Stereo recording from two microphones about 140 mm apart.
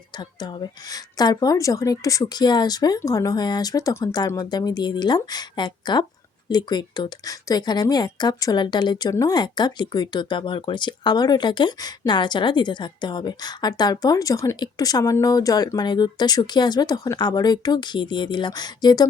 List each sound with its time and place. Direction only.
0.2 s a woman's voice: 30° left (ahead or behind)